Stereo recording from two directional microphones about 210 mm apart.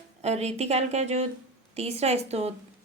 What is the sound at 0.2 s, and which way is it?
Speech, 30° right (ahead or behind).